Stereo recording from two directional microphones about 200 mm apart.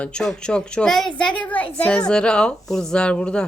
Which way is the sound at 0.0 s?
5° left (ahead or behind).